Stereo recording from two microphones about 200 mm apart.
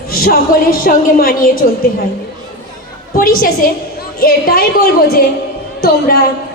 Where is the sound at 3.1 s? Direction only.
45° left (ahead or behind).